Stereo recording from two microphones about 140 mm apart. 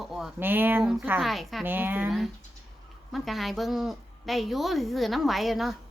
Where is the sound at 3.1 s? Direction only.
Centre (ahead or behind).